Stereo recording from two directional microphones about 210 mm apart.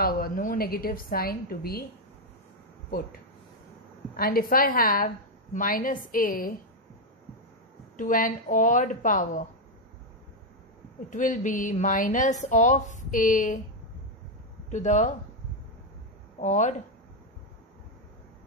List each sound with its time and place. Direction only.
0.0 s a woman's voice: 45° left (ahead or behind)
4.2 s a woman's voice: 45° left (ahead or behind)
8.0 s a woman's voice: 40° left (ahead or behind)
11.1 s a woman's voice: 40° left (ahead or behind)
14.7 s a woman's voice: 35° left (ahead or behind)
16.3 s speech: 35° left (ahead or behind)